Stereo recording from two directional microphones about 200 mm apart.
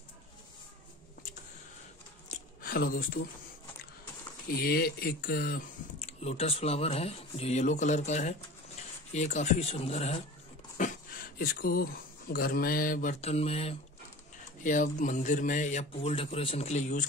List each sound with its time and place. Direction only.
2.3 s a sound: 45° left (ahead or behind)
4.6 s speech: 50° left (ahead or behind); by 10.2 s 30° left (ahead or behind)
10.8 s speech: 45° left (ahead or behind)
13.2 s speech: 30° left (ahead or behind)